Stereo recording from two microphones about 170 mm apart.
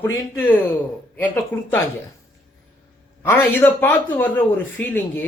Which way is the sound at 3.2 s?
10° left (ahead or behind).